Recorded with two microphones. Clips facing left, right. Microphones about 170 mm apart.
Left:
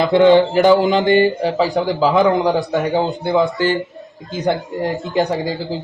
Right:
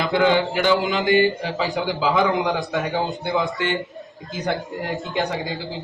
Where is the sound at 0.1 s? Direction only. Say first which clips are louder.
Left 8 dB; 35° left (ahead or behind).